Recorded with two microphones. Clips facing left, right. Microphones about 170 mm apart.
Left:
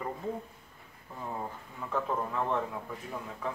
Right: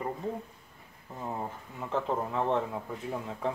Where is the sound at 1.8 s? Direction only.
25° right (ahead or behind).